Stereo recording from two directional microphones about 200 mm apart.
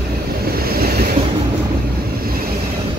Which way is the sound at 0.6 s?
50° right (ahead or behind).